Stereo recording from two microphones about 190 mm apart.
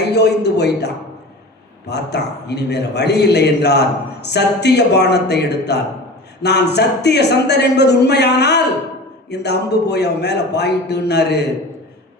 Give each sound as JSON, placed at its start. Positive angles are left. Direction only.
{"t": 0.1, "sound": "a man's voice", "side_deg": 60}